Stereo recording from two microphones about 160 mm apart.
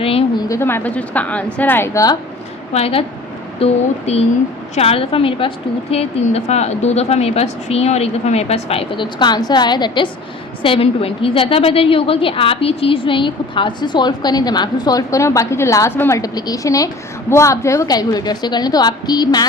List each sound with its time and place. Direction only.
0.0 s a sound: 35° left (ahead or behind)
0.4 s a woman's voice: 15° left (ahead or behind)
2.7 s a woman's voice: 40° left (ahead or behind)